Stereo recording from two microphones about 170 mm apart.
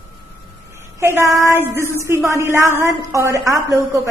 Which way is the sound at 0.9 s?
15° right (ahead or behind).